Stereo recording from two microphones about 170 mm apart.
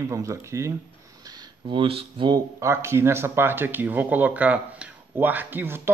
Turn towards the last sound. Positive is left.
turn(degrees=-10)  # may be behind; listen again after turning